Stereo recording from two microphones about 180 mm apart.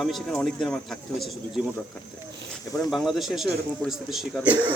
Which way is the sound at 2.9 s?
Centre (ahead or behind).